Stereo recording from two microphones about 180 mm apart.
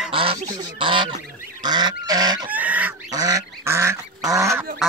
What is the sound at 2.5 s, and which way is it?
Goose, 10° right (ahead or behind).